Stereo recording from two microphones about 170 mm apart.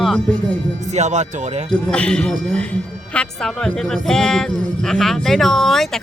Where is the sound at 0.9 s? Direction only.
45° right (ahead or behind).